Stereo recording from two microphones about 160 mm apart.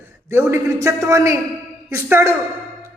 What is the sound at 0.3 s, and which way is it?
A man's voice, 15° right (ahead or behind).